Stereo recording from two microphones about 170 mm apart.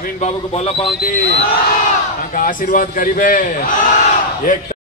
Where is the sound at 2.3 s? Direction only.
55° left (ahead or behind).